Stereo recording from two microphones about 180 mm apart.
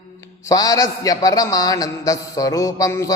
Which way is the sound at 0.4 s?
20° left (ahead or behind).